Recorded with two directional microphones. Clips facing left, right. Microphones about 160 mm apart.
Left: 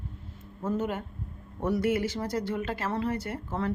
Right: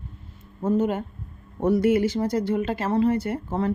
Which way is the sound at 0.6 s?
25° right (ahead or behind).